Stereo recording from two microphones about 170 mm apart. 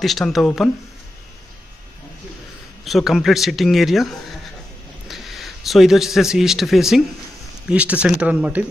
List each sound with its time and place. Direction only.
0.0 s speech: centre (ahead or behind)
2.8 s a man's voice: centre (ahead or behind)